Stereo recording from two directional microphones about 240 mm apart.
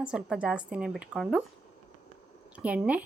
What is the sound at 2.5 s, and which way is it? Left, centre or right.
Speech, centre.